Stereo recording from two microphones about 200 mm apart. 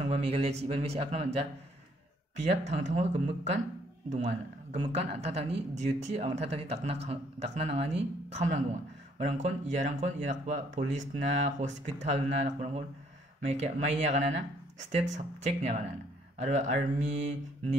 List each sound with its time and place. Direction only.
0.0 s speech: 30° right (ahead or behind)
2.4 s speech: 35° right (ahead or behind)
4.7 s speech: 35° right (ahead or behind)